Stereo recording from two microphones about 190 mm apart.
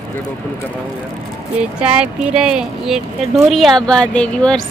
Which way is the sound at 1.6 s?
5° right (ahead or behind).